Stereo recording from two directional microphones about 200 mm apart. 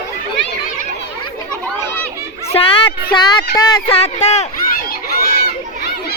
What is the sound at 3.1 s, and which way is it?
Speech, 20° left (ahead or behind).